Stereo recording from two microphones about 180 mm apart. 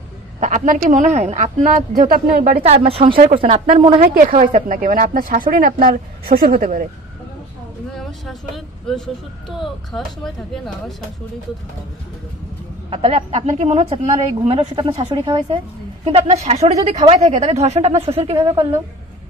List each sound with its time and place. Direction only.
0.4 s speech: 45° right (ahead or behind)
2.6 s a woman's voice: 35° right (ahead or behind)
4.0 s speech: 50° right (ahead or behind)
7.9 s speech: centre (ahead or behind)
12.9 s a woman's voice: 35° right (ahead or behind)